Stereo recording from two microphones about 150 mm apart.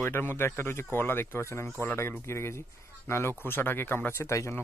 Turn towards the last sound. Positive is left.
turn(degrees=20)  # may be behind; listen again after turning